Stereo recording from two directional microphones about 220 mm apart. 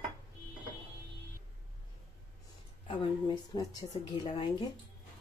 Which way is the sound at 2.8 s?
20° left (ahead or behind).